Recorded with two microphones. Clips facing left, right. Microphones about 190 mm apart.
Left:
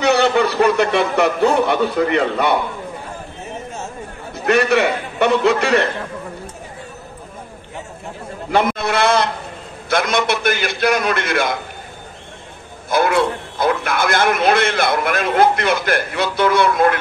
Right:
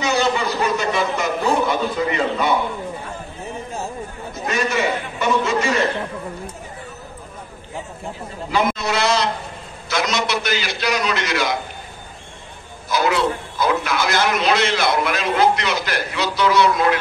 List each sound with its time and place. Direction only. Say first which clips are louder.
0.0 s a man's voice: left 5 dB; 65° left (ahead or behind)
4.5 s a man's voice: left 6 dB; 65° left (ahead or behind)
8.5 s a man's voice: left 3 dB; 55° left (ahead or behind)
12.9 s a man's voice: left 3 dB; 55° left (ahead or behind)